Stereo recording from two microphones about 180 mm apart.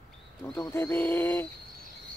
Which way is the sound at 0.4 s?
15° left (ahead or behind).